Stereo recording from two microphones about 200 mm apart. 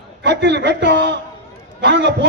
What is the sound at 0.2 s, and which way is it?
A man's voice, 60° right (ahead or behind).